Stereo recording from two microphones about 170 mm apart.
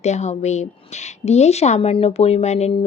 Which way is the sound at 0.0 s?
40° left (ahead or behind).